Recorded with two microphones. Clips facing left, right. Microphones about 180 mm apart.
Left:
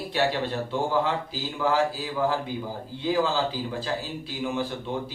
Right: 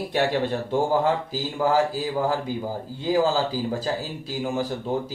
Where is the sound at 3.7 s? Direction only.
40° right (ahead or behind).